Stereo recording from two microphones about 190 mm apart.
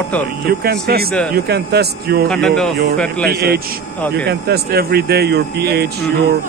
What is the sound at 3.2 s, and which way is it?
Speech, 55° right (ahead or behind).